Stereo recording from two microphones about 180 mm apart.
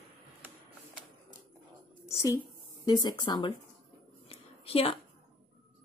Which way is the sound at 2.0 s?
15° left (ahead or behind).